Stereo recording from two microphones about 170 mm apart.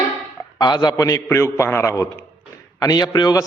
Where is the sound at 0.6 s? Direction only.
25° left (ahead or behind).